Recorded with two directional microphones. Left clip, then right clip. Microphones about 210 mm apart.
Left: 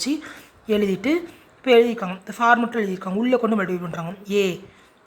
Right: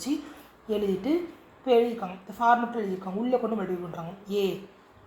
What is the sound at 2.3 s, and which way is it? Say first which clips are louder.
A man's voice: left 5 dB; 40° left (ahead or behind).